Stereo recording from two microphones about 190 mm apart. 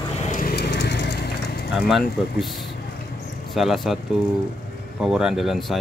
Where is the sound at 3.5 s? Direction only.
Centre (ahead or behind).